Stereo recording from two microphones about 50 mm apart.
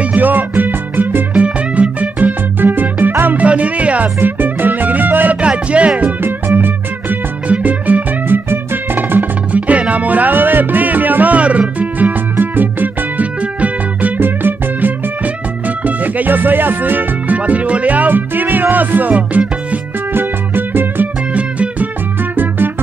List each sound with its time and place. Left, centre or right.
0.0 s music: right
1.3 s music: right
3.3 s music: right
4.2 s music: right
5.4 s music: right
7.4 s music: right
8.5 s music: right
9.5 s music: right
20.2 s music: right
21.3 s music: right
22.3 s music: right